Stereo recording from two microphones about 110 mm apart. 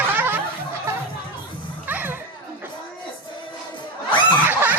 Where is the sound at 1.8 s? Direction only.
15° right (ahead or behind).